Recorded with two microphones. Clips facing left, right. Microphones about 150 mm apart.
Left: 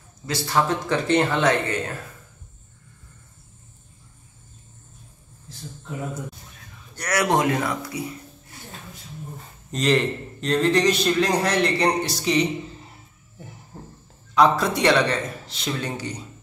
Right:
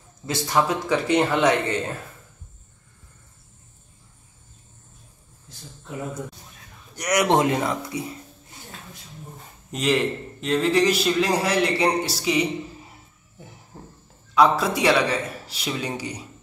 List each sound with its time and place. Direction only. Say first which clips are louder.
0.3 s a man's voice: even; 20° right (ahead or behind)
7.0 s speech: right 2 dB; 20° right (ahead or behind)
9.7 s a man's voice: left 1 dB; 5° right (ahead or behind)
13.7 s fowl: left 1 dB; 5° left (ahead or behind)
14.3 s a man's voice: even; 5° right (ahead or behind)